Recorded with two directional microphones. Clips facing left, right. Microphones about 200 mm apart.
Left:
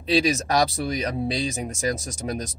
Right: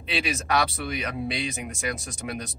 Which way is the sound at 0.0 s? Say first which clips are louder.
Left 8 dB; 35° left (ahead or behind).